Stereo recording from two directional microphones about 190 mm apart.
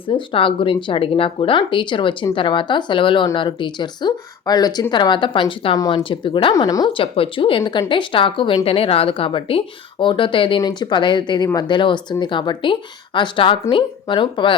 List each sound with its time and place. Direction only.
0.0 s speech: 25° left (ahead or behind)